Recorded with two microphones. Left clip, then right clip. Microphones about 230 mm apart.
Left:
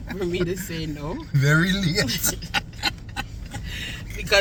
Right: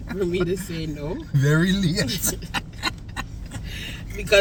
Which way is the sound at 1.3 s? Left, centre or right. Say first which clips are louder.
Left 2 dB; centre.